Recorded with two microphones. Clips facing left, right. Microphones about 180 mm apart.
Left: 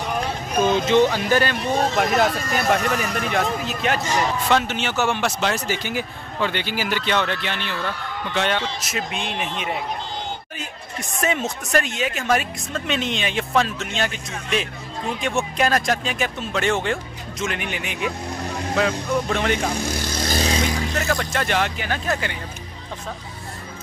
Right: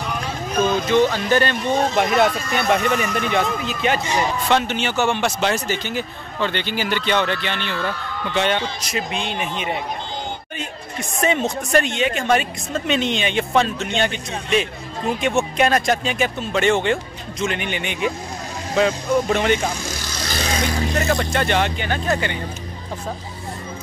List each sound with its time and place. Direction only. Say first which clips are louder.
0.6 s a sound: even; 20° left (ahead or behind)
1.1 s speech: right 1 dB; 5° left (ahead or behind)
19.8 s vehicle: left 4 dB; 55° left (ahead or behind)
21.1 s speech: right 2 dB; centre (ahead or behind)